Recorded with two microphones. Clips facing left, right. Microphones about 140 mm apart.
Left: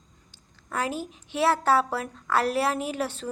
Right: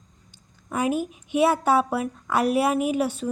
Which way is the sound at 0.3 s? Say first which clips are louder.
Right 3 dB; 15° right (ahead or behind).